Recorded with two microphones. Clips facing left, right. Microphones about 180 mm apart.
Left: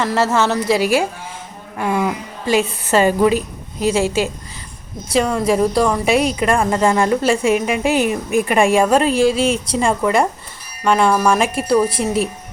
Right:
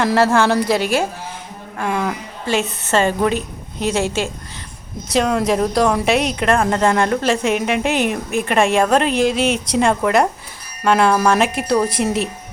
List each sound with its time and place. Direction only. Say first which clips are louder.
0.0 s a woman's voice: right 2 dB; 5° left (ahead or behind)